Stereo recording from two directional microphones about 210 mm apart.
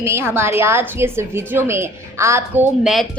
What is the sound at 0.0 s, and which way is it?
A woman's voice, 10° right (ahead or behind).